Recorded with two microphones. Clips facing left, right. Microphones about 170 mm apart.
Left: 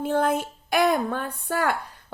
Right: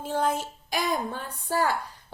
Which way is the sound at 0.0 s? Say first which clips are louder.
Left 4 dB; 55° left (ahead or behind).